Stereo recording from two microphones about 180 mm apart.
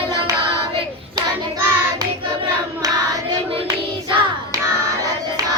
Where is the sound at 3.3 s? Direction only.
20° right (ahead or behind).